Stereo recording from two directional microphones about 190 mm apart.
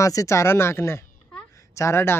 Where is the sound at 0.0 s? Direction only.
15° left (ahead or behind).